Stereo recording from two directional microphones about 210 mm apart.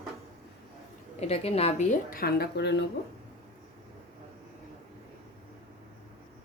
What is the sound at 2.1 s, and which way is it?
Speech, 45° left (ahead or behind).